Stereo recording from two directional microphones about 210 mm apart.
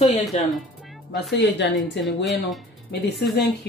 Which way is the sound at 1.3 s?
60° left (ahead or behind).